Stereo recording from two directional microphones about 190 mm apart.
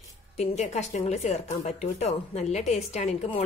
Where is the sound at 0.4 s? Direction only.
35° left (ahead or behind).